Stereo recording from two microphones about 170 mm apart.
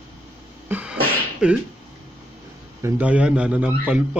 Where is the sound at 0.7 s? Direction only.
10° right (ahead or behind).